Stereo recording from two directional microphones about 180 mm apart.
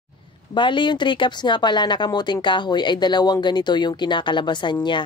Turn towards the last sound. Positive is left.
turn(degrees=25)  # may be behind; listen again after turning